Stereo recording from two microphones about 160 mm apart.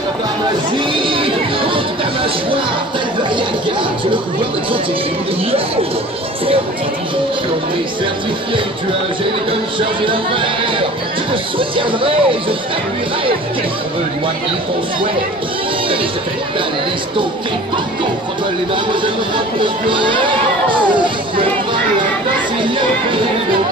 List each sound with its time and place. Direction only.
0.9 s music: 35° right (ahead or behind)
10.0 s speech: 30° right (ahead or behind)
18.9 s speech: 30° right (ahead or behind)